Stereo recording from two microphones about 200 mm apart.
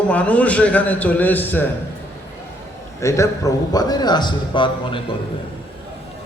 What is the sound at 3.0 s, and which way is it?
A man's voice, 15° left (ahead or behind).